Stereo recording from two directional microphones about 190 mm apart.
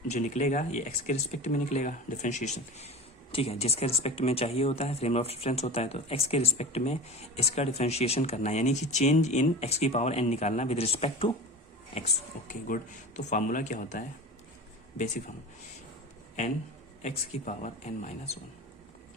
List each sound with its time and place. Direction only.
0.1 s speech: 40° left (ahead or behind)
11.9 s speech: 40° left (ahead or behind)
17.0 s speech: 40° left (ahead or behind)